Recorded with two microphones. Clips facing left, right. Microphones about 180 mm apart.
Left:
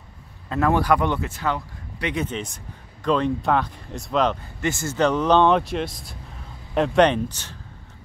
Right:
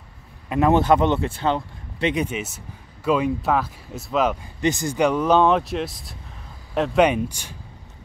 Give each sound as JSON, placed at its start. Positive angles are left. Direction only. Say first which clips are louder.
{"t": 0.5, "sound": "speech", "louder": "right 3 dB", "side_deg": -20}
{"t": 2.2, "sound": "speech", "louder": "right 1 dB", "side_deg": -5}
{"t": 4.6, "sound": "speech", "louder": "right 3 dB", "side_deg": -20}